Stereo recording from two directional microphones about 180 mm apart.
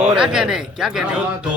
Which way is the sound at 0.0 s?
5° right (ahead or behind).